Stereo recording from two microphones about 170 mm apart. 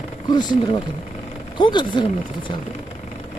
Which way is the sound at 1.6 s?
30° left (ahead or behind).